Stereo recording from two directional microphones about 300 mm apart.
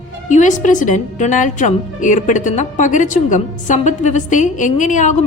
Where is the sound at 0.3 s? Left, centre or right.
Left.